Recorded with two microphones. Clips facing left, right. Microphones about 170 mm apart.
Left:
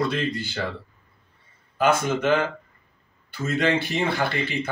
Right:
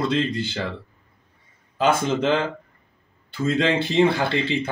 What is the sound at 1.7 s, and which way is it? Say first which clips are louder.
Speech: right 1 dB; 25° right (ahead or behind).